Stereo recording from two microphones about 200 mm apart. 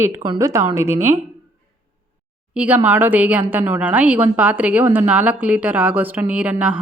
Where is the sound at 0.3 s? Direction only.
15° right (ahead or behind).